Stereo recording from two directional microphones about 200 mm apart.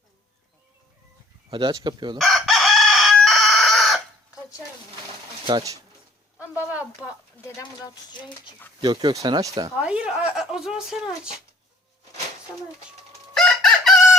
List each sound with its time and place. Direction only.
1.5 s speech: 25° right (ahead or behind)
2.1 s chicken: centre (ahead or behind)
5.5 s speech: 25° right (ahead or behind)
6.5 s a sound: 5° right (ahead or behind)
8.8 s speech: 20° right (ahead or behind)
9.8 s speech: 5° right (ahead or behind)
13.3 s chicken: centre (ahead or behind)